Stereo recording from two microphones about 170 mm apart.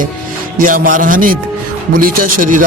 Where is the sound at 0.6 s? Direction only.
50° right (ahead or behind).